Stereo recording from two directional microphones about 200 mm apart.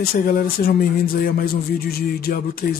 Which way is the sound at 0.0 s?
45° left (ahead or behind).